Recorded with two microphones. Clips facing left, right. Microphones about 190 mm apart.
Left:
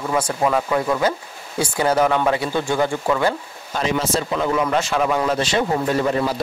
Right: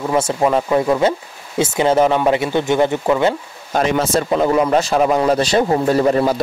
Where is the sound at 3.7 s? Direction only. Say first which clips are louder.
Right 5 dB; 55° right (ahead or behind).